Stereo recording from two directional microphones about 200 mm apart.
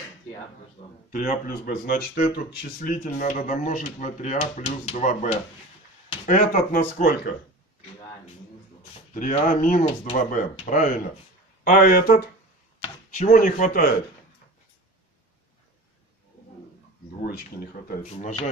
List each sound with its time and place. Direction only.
1.1 s speech: 40° left (ahead or behind)
9.1 s speech: 40° left (ahead or behind)
18.1 s speech: 30° left (ahead or behind)